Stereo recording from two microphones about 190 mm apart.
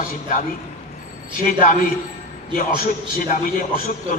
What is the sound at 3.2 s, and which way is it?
Speech, 45° left (ahead or behind).